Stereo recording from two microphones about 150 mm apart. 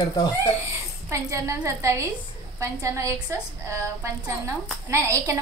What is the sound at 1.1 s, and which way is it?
A woman's voice, 20° right (ahead or behind).